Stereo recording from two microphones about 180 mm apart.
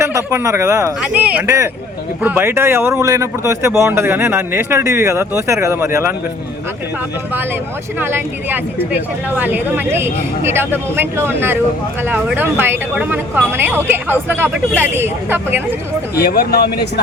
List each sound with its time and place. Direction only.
0.0 s a woman's voice: 15° right (ahead or behind)
7.9 s a woman's voice: 10° right (ahead or behind)
16.1 s speech: 60° left (ahead or behind)